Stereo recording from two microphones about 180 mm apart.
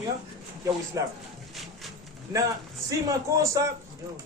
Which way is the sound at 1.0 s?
20° right (ahead or behind).